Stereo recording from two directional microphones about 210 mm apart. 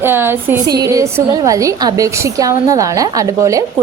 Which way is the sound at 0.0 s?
10° right (ahead or behind).